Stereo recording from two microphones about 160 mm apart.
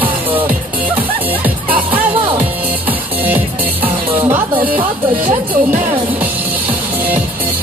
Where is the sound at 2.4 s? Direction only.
10° right (ahead or behind).